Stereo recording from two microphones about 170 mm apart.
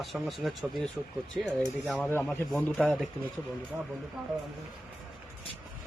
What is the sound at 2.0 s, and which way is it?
A man's voice, 10° left (ahead or behind).